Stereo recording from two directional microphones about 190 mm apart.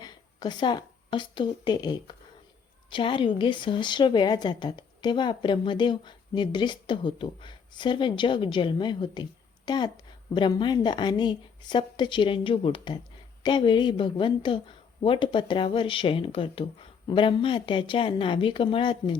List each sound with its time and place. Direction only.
0.0 s a woman's voice: 20° left (ahead or behind)